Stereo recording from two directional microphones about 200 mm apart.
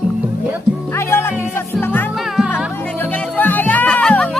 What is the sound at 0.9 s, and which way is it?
Music, 10° left (ahead or behind).